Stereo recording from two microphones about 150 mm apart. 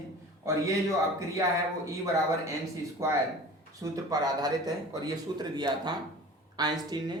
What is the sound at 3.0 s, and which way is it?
A man's voice, 20° right (ahead or behind).